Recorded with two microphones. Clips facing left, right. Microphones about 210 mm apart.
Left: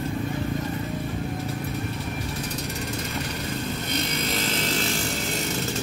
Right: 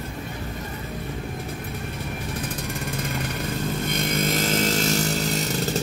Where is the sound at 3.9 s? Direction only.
50° right (ahead or behind).